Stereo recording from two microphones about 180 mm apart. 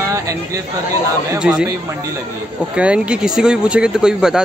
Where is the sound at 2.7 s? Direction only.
5° right (ahead or behind).